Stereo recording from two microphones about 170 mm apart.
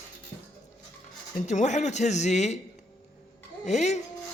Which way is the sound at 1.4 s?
45° left (ahead or behind).